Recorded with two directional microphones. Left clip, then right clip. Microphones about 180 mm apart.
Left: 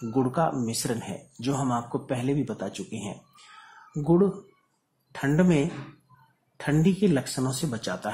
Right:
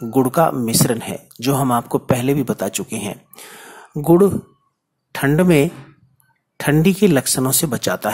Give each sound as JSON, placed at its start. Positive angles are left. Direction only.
{"t": 0.1, "sound": "speech", "side_deg": -30}